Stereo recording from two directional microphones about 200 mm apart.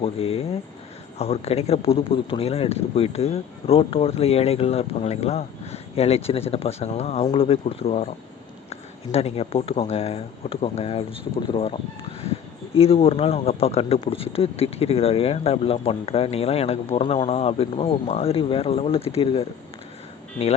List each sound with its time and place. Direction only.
0.0 s speech: 30° left (ahead or behind)